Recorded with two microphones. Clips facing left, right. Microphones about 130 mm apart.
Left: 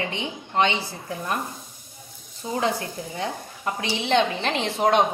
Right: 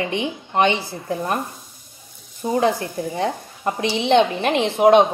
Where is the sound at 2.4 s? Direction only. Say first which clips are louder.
Right 7 dB; 35° right (ahead or behind).